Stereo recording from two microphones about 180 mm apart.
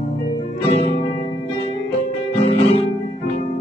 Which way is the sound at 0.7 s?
35° left (ahead or behind).